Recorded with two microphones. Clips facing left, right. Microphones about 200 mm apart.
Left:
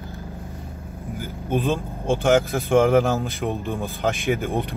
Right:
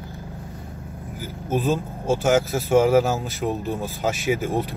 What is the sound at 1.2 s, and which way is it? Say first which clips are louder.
A man's voice: even; 5° right (ahead or behind).